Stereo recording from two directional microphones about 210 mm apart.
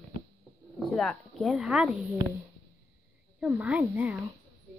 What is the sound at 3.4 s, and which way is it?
Speech, 5° right (ahead or behind).